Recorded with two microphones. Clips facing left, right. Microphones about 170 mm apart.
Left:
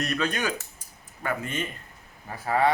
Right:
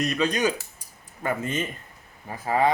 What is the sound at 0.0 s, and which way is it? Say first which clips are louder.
Speech: right 4 dB; 15° right (ahead or behind).